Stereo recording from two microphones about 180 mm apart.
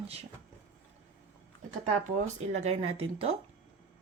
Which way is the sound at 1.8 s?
40° right (ahead or behind).